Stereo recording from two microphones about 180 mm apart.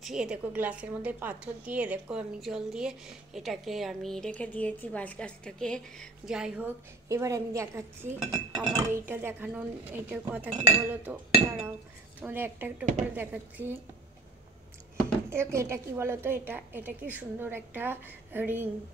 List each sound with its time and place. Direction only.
0.0 s a woman's voice: 5° right (ahead or behind)
8.2 s a woman's voice: 5° right (ahead or behind)
12.2 s speech: 10° right (ahead or behind)
15.2 s speech: 15° right (ahead or behind)